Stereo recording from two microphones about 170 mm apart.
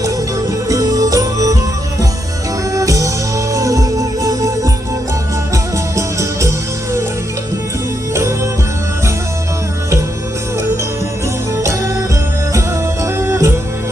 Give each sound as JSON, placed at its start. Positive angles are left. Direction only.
{"t": 0.7, "sound": "music", "side_deg": -20}
{"t": 2.7, "sound": "music", "side_deg": -20}
{"t": 5.7, "sound": "music", "side_deg": -20}
{"t": 11.6, "sound": "music", "side_deg": -15}
{"t": 13.1, "sound": "music", "side_deg": -15}